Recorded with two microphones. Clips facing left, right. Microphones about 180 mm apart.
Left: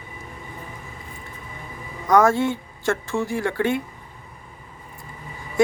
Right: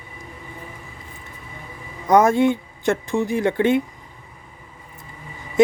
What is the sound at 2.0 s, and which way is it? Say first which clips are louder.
Speech: right 2 dB; 20° right (ahead or behind).